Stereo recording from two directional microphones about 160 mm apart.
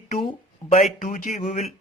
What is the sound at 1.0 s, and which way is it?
Speech, 55° left (ahead or behind).